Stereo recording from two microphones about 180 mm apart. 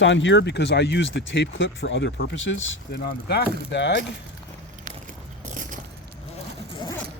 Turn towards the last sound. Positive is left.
turn(degrees=-45)  # may be behind; listen again after turning